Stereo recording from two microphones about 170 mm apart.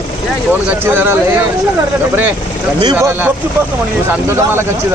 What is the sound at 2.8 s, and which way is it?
Speech, 20° right (ahead or behind).